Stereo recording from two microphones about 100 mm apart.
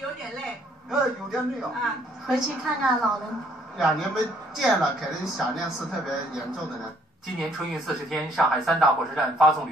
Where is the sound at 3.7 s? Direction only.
Centre (ahead or behind).